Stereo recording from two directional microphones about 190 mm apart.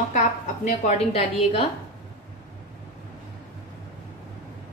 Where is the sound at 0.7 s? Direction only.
35° left (ahead or behind).